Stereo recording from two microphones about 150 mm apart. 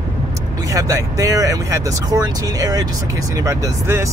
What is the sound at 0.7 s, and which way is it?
Speech, 20° right (ahead or behind).